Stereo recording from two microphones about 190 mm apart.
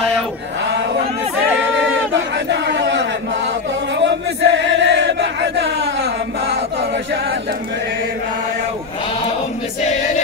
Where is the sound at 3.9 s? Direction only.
70° right (ahead or behind).